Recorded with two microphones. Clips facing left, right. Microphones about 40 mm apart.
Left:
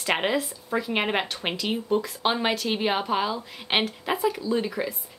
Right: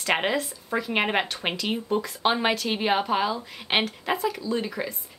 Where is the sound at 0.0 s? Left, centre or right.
Centre.